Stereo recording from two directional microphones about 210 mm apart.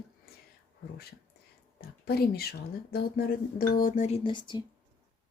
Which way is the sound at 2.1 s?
50° left (ahead or behind).